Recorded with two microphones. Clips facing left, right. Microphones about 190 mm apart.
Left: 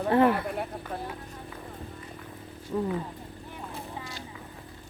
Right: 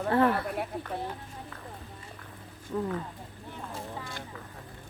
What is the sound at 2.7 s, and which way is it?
Speech, 10° left (ahead or behind).